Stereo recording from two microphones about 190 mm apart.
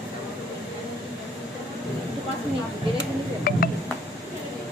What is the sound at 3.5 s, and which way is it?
Music, 50° left (ahead or behind).